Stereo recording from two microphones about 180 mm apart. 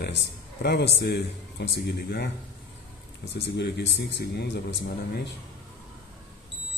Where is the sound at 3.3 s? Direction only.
70° left (ahead or behind).